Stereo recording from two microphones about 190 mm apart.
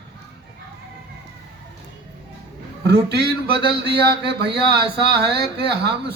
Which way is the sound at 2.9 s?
60° right (ahead or behind).